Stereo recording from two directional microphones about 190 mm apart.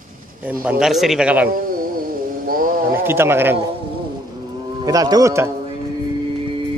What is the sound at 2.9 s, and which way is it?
Speech, 10° right (ahead or behind).